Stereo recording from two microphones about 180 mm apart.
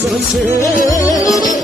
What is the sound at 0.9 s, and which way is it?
Music, 20° left (ahead or behind).